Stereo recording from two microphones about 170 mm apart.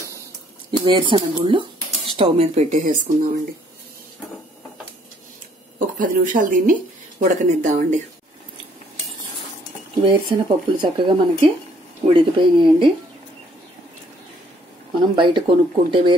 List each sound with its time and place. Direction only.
0.7 s speech: 30° right (ahead or behind); by 3.2 s 50° right (ahead or behind)
5.8 s speech: 50° right (ahead or behind)
10.0 s speech: 25° right (ahead or behind)
15.1 s speech: 30° right (ahead or behind)